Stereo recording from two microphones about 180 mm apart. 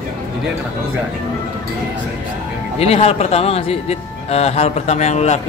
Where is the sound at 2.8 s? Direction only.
35° left (ahead or behind).